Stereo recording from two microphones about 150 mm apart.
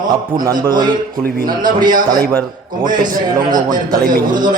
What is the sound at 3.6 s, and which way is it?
Speech, 30° right (ahead or behind).